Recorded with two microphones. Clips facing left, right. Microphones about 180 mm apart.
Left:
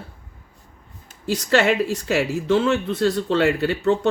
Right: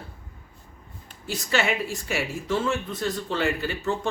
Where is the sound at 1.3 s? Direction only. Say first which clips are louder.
Left 7 dB; 75° left (ahead or behind).